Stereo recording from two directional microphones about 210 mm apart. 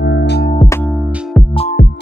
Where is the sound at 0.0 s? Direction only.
55° left (ahead or behind).